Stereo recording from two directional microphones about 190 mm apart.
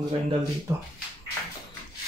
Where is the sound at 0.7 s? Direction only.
15° right (ahead or behind).